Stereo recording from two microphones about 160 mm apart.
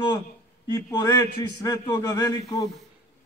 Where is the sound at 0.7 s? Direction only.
25° left (ahead or behind).